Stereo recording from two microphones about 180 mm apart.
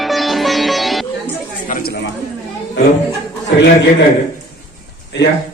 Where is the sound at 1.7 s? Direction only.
60° left (ahead or behind).